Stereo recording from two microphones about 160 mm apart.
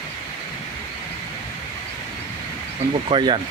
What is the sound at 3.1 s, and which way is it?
Speech, 30° right (ahead or behind).